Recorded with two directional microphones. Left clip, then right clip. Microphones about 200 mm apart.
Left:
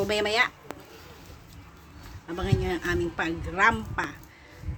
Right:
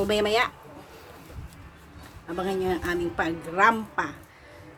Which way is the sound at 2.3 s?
Centre (ahead or behind).